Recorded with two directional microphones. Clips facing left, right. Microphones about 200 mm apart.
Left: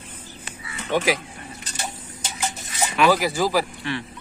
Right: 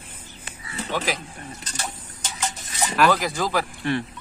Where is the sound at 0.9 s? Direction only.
10° left (ahead or behind).